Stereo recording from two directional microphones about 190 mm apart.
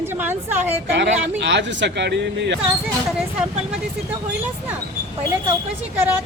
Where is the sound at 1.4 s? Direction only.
65° right (ahead or behind).